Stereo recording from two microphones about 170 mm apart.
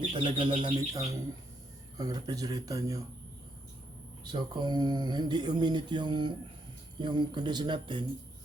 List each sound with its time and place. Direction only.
0.0 s speech: 30° right (ahead or behind)
4.2 s speech: 25° right (ahead or behind)